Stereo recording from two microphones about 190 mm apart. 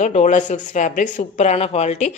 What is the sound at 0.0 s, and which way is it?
Speech, 40° left (ahead or behind).